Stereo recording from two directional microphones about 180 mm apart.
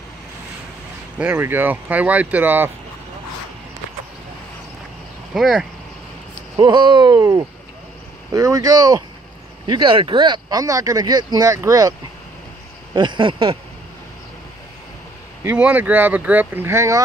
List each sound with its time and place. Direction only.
1.1 s speech: 10° right (ahead or behind)
5.3 s speech: 5° right (ahead or behind)
6.5 s speech: 25° right (ahead or behind)
12.9 s speech: 25° right (ahead or behind)
15.4 s speech: 10° right (ahead or behind)